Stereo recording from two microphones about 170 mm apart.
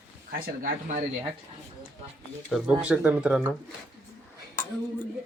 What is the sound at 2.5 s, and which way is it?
Speech, 5° right (ahead or behind).